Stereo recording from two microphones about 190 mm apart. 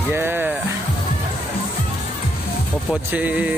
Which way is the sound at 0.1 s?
10° right (ahead or behind).